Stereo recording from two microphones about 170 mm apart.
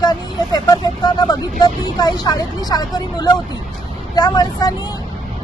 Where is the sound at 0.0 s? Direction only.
25° left (ahead or behind).